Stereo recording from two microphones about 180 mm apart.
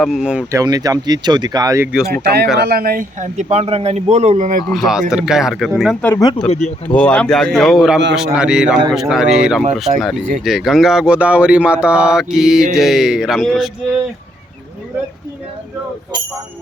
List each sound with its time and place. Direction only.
0.0 s speech: 5° right (ahead or behind)
0.5 s speech: 20° right (ahead or behind)
1.9 s speech: 5° right (ahead or behind)
2.1 s a man's voice: 65° right (ahead or behind); by 4.6 s 45° right (ahead or behind)
4.7 s speech: centre (ahead or behind)
6.0 s speech: 10° left (ahead or behind)